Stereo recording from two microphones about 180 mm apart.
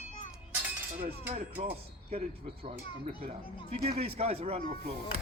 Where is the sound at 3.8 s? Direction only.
35° right (ahead or behind).